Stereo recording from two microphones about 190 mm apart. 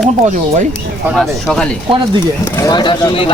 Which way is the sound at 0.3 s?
40° right (ahead or behind).